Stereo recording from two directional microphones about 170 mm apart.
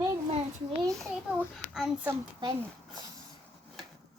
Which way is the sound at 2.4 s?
25° right (ahead or behind).